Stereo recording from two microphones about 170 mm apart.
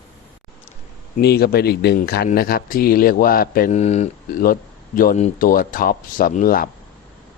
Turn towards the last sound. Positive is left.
turn(degrees=55)  # may be behind; listen again after turning